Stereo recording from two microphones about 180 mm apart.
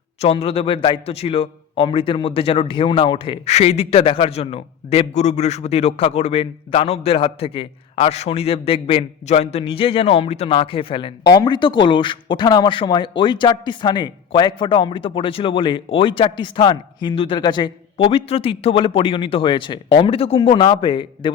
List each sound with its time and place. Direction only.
0.2 s a man's voice: 35° left (ahead or behind)